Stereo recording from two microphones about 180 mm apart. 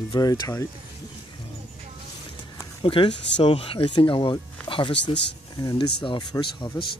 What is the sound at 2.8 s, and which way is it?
Speech, 30° left (ahead or behind).